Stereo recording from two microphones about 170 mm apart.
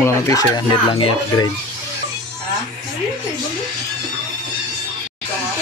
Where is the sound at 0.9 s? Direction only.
30° left (ahead or behind).